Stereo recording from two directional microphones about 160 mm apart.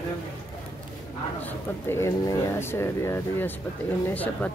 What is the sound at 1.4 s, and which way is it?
Speech, 15° left (ahead or behind).